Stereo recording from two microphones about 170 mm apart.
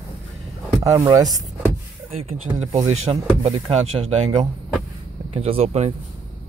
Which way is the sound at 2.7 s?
40° right (ahead or behind).